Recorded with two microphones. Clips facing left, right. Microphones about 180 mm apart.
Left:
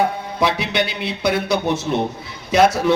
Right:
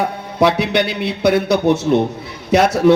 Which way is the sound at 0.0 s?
65° right (ahead or behind).